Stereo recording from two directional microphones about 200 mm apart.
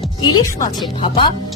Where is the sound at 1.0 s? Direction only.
25° left (ahead or behind).